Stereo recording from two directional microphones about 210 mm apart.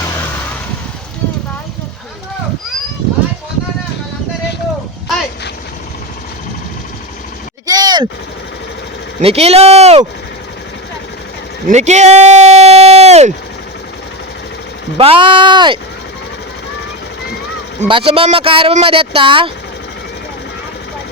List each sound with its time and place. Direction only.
7.7 s vehicle: 20° right (ahead or behind)
9.2 s speech: 30° right (ahead or behind)
11.7 s speech: 35° right (ahead or behind)
14.9 s speech: 25° right (ahead or behind)
17.7 s speech: 25° right (ahead or behind)